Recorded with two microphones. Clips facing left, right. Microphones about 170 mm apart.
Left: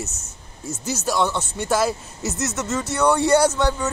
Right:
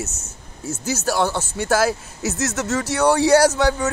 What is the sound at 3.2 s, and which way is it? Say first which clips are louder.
Speech: right 3 dB; 75° right (ahead or behind).